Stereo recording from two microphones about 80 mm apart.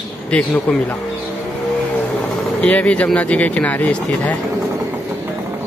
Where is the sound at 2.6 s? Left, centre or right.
Centre.